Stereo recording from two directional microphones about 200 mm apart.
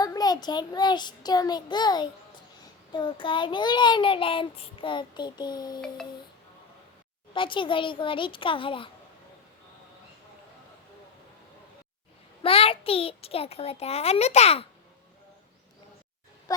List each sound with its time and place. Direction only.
0.0 s a child's voice: 20° left (ahead or behind)
7.3 s a child's voice: 25° left (ahead or behind)
12.4 s a child's voice: 30° left (ahead or behind)
16.5 s speech: 20° left (ahead or behind)